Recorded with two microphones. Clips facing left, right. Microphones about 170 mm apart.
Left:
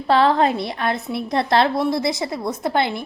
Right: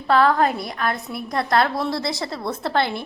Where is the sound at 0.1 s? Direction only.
25° left (ahead or behind).